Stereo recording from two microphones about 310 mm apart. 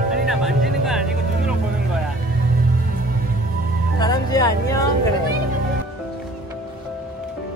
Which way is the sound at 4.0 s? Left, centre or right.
Centre.